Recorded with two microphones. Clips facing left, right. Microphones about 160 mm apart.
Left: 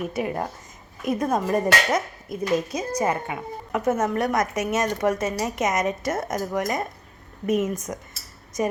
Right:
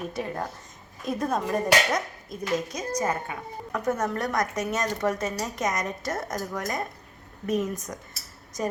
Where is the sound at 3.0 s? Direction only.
20° left (ahead or behind).